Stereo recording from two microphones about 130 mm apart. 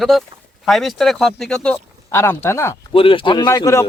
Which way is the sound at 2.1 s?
20° left (ahead or behind).